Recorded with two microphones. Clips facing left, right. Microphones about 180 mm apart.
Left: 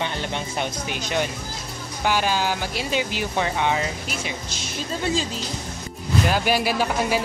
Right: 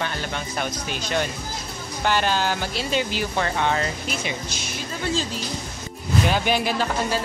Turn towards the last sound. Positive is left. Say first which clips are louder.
# left 2 dB
turn(degrees=10)  # may be behind; listen again after turning